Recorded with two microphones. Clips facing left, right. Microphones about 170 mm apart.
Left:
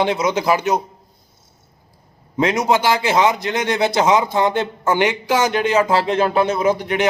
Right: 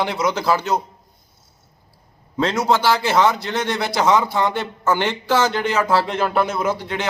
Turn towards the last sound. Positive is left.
turn(degrees=15)  # may be behind; listen again after turning